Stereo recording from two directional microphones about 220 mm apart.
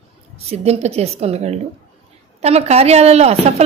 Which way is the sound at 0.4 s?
30° right (ahead or behind).